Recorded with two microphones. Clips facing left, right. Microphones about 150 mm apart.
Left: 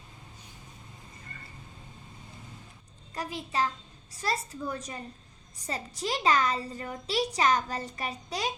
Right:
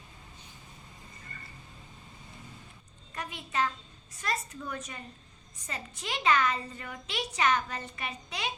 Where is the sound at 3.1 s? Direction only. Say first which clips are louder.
Left 2 dB; 35° left (ahead or behind).